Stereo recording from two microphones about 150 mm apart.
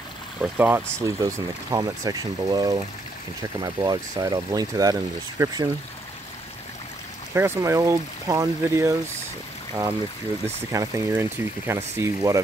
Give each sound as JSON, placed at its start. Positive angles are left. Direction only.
{"t": 0.4, "sound": "speech", "side_deg": -10}
{"t": 7.3, "sound": "speech", "side_deg": -15}
{"t": 10.4, "sound": "speech", "side_deg": -20}